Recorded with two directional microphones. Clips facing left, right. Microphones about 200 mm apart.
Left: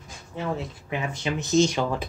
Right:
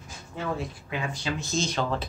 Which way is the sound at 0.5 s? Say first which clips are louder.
Left 2 dB; 20° left (ahead or behind).